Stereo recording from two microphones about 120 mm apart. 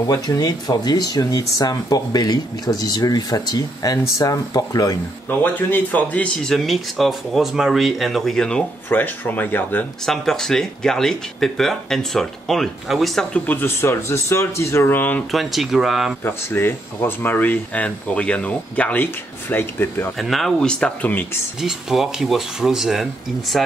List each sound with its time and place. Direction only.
0.1 s speech: 30° left (ahead or behind)
5.4 s speech: 15° left (ahead or behind)
8.8 s speech: 15° left (ahead or behind)
10.0 s speech: 5° left (ahead or behind)
15.3 s speech: centre (ahead or behind)
16.3 s speech: 20° left (ahead or behind)
20.2 s speech: centre (ahead or behind)
21.5 s speech: 5° right (ahead or behind)